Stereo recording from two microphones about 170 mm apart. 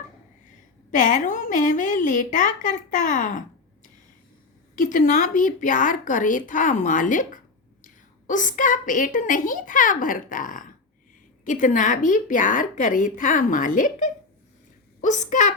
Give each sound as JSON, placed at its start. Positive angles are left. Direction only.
{"t": 0.4, "sound": "a woman's voice", "side_deg": 50}
{"t": 4.7, "sound": "a woman's voice", "side_deg": 50}